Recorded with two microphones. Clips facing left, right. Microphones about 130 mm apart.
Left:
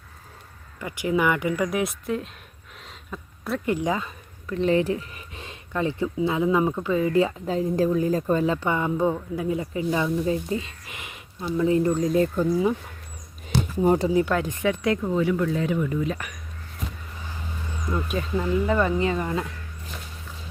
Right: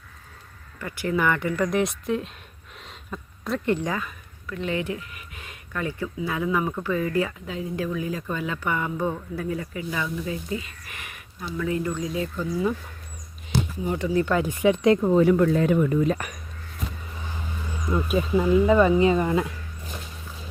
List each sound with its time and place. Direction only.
0.8 s speech: 15° left (ahead or behind)
4.4 s speech: 35° left (ahead or behind)
7.4 s speech: 40° left (ahead or behind)
13.8 s speech: 40° left (ahead or behind)
14.3 s speech: centre (ahead or behind)
14.6 s speech: 20° right (ahead or behind)
15.0 s speech: 40° right (ahead or behind)
17.8 s speech: 5° right (ahead or behind)